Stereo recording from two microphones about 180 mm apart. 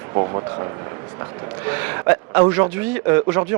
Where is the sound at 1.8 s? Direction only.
15° right (ahead or behind).